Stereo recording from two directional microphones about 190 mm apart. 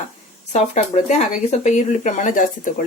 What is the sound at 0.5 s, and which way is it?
Speech, 35° left (ahead or behind).